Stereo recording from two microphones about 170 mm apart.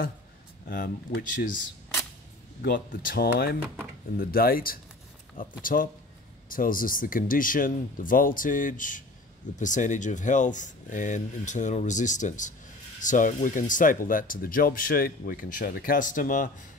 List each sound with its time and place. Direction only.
0.7 s speech: 60° left (ahead or behind)
2.6 s speech: 60° left (ahead or behind)